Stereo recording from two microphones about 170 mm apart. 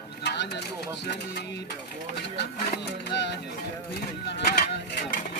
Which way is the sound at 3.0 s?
85° left.